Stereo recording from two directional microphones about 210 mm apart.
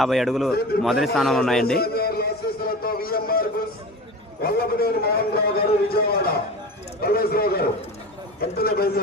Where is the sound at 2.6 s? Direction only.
45° left (ahead or behind).